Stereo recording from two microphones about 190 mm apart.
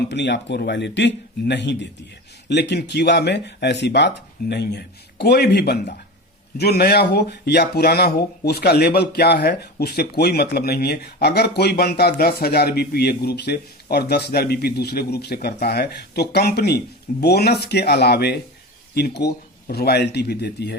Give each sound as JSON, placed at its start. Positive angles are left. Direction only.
{"t": 0.1, "sound": "speech", "side_deg": 65}